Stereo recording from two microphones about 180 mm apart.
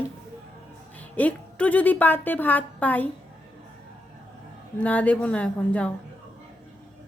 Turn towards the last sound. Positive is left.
turn(degrees=5)  # may be behind; listen again after turning